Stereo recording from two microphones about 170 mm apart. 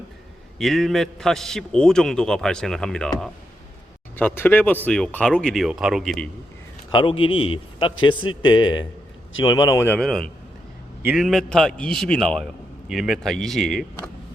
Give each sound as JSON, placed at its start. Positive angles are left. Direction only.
{"t": 0.6, "sound": "a man's voice", "side_deg": 0}
{"t": 6.9, "sound": "a man's voice", "side_deg": 30}